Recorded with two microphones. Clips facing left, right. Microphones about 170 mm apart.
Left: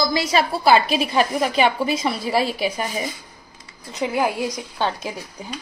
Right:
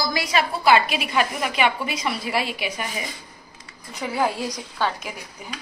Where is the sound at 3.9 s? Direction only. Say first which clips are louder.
Left 2 dB; 20° left (ahead or behind).